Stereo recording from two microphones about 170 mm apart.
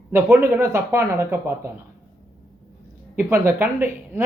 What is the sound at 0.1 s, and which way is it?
Speech, 15° right (ahead or behind).